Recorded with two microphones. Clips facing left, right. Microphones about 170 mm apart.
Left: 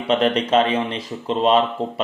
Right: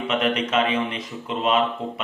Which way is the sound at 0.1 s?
35° left (ahead or behind).